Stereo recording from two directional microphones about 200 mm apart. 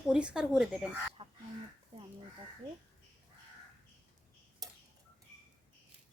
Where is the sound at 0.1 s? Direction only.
5° right (ahead or behind).